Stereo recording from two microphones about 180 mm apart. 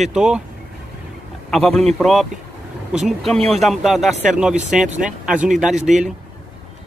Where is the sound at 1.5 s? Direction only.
Centre (ahead or behind).